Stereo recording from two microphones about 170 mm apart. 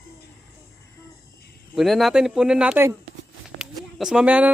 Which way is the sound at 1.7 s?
Centre (ahead or behind).